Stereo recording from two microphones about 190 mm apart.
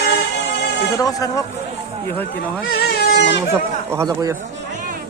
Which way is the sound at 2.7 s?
55° left (ahead or behind).